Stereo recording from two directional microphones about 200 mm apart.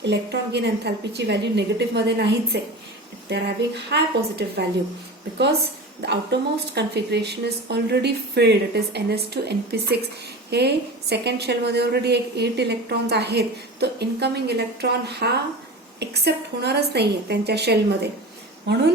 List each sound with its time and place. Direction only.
0.0 s a woman's voice: 55° right (ahead or behind)
6.0 s a woman's voice: 55° right (ahead or behind)